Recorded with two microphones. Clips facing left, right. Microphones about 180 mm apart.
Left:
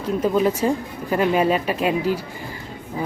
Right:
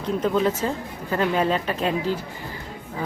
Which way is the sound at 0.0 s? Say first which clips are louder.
Left 2 dB; 10° left (ahead or behind).